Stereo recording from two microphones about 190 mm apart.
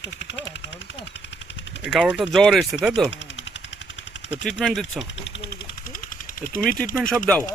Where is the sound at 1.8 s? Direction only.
5° right (ahead or behind).